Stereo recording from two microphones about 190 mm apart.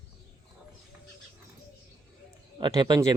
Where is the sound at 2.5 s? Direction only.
25° right (ahead or behind).